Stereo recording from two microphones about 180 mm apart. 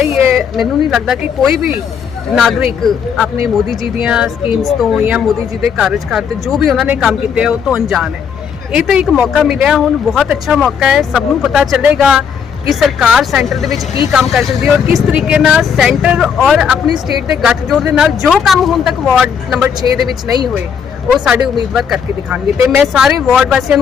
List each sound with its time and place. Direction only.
0.0 s a sound: 15° right (ahead or behind)
0.3 s speech: centre (ahead or behind)
21.1 s speech: centre (ahead or behind)
22.5 s speech: 15° right (ahead or behind)
22.9 s speech: centre (ahead or behind)